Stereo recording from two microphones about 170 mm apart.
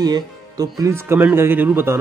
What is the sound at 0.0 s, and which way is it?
Speech, 20° right (ahead or behind).